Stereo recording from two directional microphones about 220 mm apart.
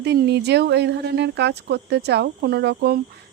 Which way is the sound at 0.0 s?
50° right (ahead or behind).